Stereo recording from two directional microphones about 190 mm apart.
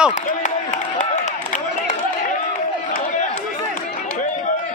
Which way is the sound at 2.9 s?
40° left (ahead or behind).